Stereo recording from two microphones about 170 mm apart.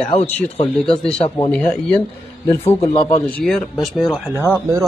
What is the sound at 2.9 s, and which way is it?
Speech, 30° left (ahead or behind).